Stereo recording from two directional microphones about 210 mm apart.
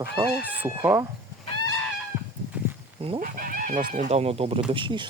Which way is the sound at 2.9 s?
25° right (ahead or behind).